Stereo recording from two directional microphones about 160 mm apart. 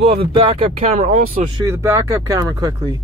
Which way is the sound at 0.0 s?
35° right (ahead or behind).